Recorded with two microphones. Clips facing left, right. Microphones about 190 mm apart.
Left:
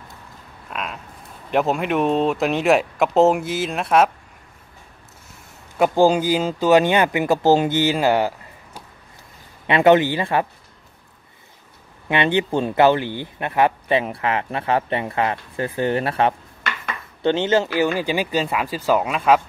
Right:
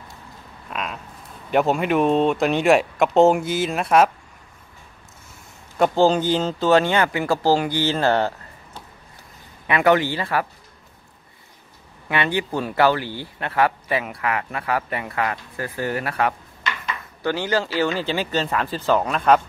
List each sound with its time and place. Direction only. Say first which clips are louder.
0.7 s speech: even; centre (ahead or behind)
5.8 s speech: left 1 dB; 10° left (ahead or behind)
9.7 s speech: left 4 dB; 25° left (ahead or behind)
12.1 s speech: left 4 dB; 20° left (ahead or behind); by 19.4 s 5° left (ahead or behind)